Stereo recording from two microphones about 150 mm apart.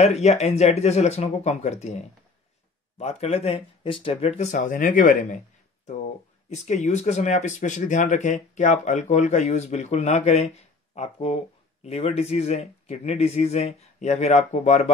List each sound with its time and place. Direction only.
0.0 s speech: 45° left (ahead or behind)
6.5 s speech: 50° left (ahead or behind)